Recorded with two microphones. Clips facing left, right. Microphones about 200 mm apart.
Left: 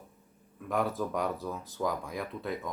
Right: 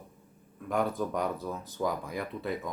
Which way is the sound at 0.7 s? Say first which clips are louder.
Right 1 dB; centre (ahead or behind).